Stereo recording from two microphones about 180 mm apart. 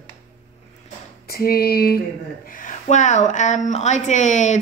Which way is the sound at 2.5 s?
45° left (ahead or behind).